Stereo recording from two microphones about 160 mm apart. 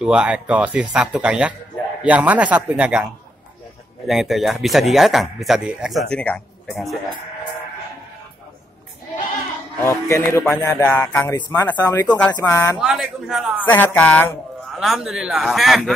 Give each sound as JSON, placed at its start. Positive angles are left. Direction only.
{"t": 0.0, "sound": "speech", "side_deg": -5}
{"t": 4.1, "sound": "speech", "side_deg": 0}
{"t": 9.8, "sound": "speech", "side_deg": 20}
{"t": 11.3, "sound": "speech", "side_deg": 25}
{"t": 12.8, "sound": "speech", "side_deg": 0}
{"t": 13.7, "sound": "speech", "side_deg": 10}